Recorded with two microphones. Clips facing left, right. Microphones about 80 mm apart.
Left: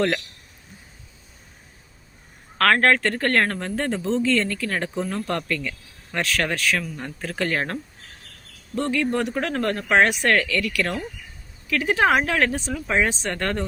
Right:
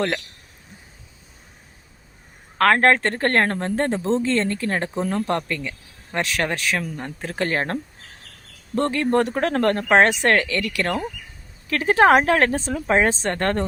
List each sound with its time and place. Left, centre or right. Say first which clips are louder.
2.6 s speech: right 2 dB; right